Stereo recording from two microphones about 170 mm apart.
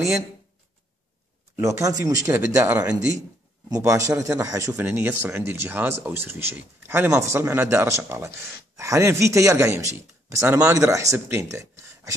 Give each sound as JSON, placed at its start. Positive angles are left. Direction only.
{"t": 1.6, "sound": "speech", "side_deg": -20}
{"t": 3.2, "sound": "speech", "side_deg": -20}